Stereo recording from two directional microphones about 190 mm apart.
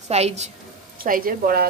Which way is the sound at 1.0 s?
50° right (ahead or behind).